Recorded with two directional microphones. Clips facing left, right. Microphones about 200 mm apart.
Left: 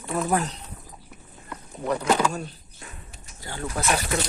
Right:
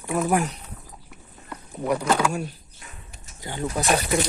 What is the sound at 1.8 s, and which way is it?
Speech, 5° right (ahead or behind).